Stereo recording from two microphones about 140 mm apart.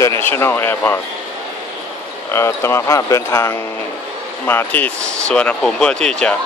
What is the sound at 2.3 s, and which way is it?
Speech, 20° left (ahead or behind).